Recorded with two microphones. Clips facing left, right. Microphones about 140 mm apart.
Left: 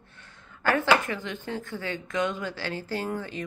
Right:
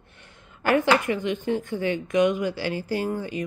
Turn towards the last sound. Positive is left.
turn(degrees=-10)  # may be behind; listen again after turning